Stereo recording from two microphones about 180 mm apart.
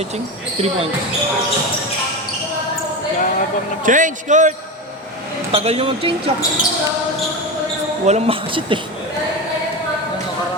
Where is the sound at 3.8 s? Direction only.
45° right (ahead or behind).